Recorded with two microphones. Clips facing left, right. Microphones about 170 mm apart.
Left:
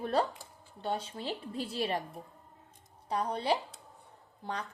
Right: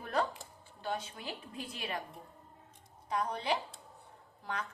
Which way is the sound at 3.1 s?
35° left (ahead or behind).